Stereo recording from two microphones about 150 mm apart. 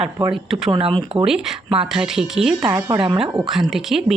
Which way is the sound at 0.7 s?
35° right (ahead or behind).